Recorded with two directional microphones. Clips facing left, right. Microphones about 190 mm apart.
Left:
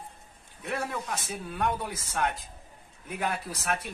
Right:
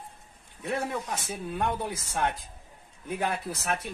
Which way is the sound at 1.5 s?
20° right (ahead or behind).